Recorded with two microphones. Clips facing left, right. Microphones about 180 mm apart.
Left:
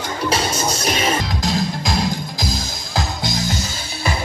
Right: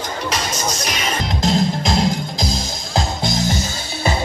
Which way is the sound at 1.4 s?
25° right (ahead or behind).